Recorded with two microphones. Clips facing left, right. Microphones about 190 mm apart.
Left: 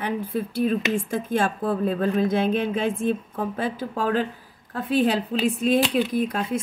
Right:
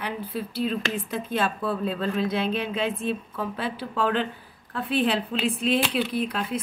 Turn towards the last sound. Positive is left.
turn(degrees=45)  # may be behind; listen again after turning